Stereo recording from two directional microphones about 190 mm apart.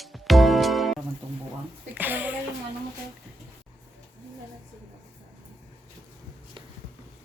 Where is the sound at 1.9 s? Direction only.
10° right (ahead or behind).